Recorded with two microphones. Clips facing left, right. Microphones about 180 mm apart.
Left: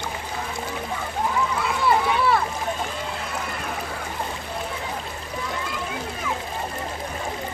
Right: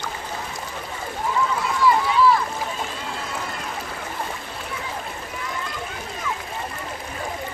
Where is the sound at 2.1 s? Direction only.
60° left (ahead or behind).